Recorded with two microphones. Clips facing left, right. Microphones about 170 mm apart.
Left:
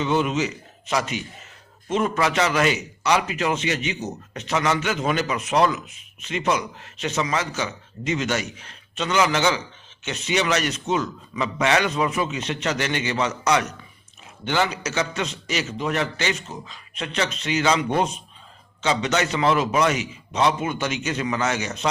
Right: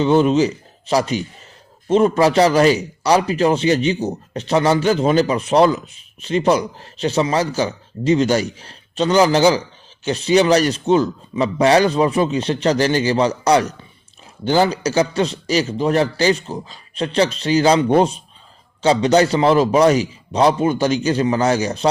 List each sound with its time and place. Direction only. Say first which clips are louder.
0.0 s a man's voice: right 8 dB; 30° right (ahead or behind)